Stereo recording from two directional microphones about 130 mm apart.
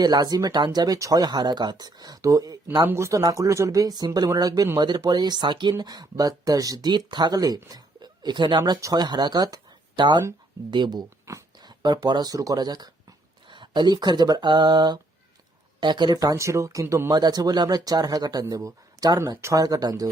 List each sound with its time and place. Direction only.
0.0 s speech: 30° right (ahead or behind)
17.1 s speech: 30° right (ahead or behind)